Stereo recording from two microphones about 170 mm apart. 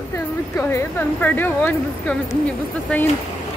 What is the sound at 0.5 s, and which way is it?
Speech, 10° left (ahead or behind).